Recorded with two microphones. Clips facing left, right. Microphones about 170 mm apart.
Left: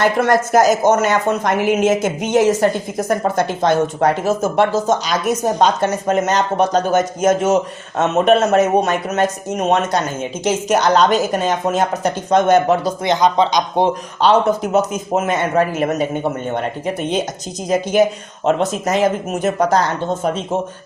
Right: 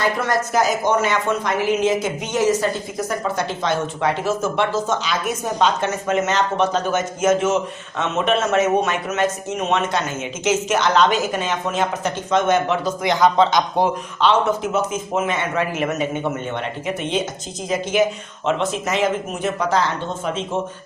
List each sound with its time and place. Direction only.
0.0 s speech: 55° left (ahead or behind); by 13.1 s 40° left (ahead or behind)
13.1 s a man's voice: 20° left (ahead or behind)
14.2 s speech: 40° left (ahead or behind)